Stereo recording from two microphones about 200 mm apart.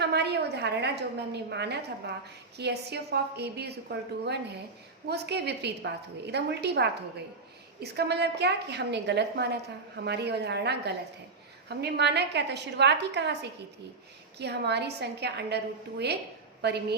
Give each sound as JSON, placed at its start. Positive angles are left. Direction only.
{"t": 0.0, "sound": "a woman's voice", "side_deg": -55}